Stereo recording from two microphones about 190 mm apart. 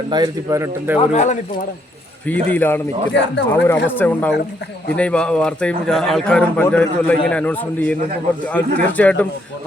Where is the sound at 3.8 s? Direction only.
10° left (ahead or behind).